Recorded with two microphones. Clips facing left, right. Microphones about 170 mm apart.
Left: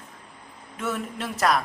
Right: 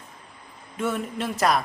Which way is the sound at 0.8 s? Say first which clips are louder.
Right 3 dB; centre (ahead or behind).